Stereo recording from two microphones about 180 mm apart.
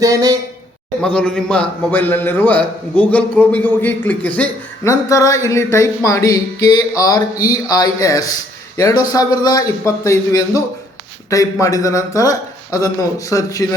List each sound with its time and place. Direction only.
0.0 s speech: 20° right (ahead or behind)
1.0 s a man's voice: 5° left (ahead or behind)